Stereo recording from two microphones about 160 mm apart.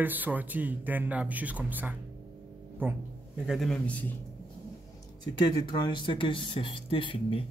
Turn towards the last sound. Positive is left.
turn(degrees=35)  # may be behind; listen again after turning